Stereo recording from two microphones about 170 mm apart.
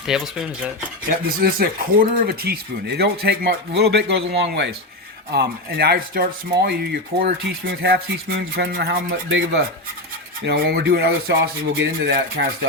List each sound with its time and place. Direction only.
0.0 s speech: 5° right (ahead or behind)
1.0 s speech: 60° right (ahead or behind); by 4.7 s 90° right
5.3 s speech: 70° right (ahead or behind); by 9.6 s 90° right
10.4 s speech: 70° right (ahead or behind)